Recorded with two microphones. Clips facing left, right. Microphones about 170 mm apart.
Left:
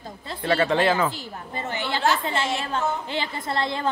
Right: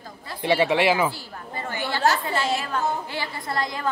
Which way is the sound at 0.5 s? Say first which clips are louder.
Right 1 dB; 10° right (ahead or behind).